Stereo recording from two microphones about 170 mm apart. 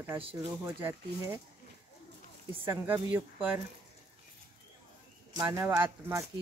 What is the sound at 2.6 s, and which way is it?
Speech, 10° right (ahead or behind).